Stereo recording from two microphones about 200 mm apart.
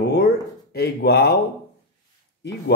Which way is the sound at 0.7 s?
55° left (ahead or behind).